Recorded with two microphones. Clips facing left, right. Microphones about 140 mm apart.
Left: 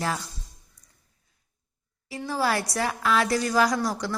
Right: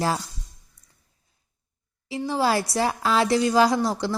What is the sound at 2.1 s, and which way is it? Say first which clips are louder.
A woman's voice: right 3 dB; 25° right (ahead or behind).